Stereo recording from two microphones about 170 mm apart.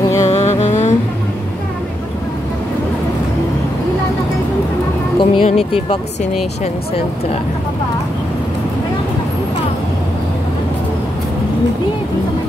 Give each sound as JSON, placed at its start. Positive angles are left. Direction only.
{"t": 0.2, "sound": "music", "side_deg": 45}
{"t": 5.2, "sound": "speech", "side_deg": 35}